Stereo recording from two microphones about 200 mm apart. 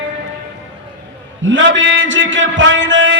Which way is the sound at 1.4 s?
70° right (ahead or behind).